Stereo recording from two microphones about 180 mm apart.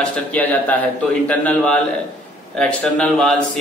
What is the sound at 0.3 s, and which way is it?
A man's voice, 10° left (ahead or behind).